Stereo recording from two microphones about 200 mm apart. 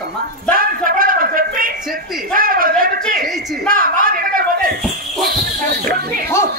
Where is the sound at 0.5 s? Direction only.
45° right (ahead or behind).